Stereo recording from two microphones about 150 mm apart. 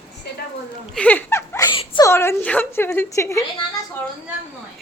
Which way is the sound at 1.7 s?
30° left (ahead or behind).